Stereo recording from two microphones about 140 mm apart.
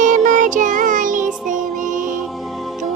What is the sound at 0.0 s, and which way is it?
Music, 65° right (ahead or behind).